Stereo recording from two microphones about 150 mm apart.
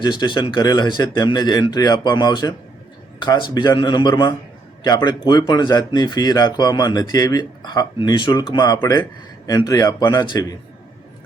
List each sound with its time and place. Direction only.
0.0 s speech: 30° left (ahead or behind)